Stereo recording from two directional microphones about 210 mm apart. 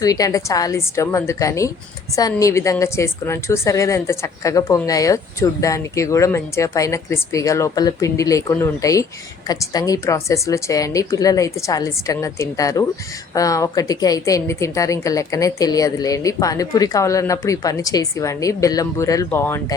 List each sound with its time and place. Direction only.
0.0 s a woman's voice: 15° left (ahead or behind)